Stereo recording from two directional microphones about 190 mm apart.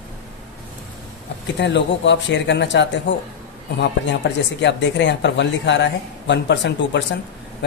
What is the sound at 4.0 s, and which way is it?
A woman's voice, 70° left (ahead or behind).